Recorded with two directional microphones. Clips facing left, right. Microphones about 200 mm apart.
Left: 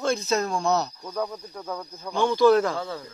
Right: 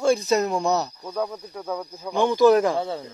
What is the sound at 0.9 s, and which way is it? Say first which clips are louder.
Speech: right 2 dB; centre (ahead or behind).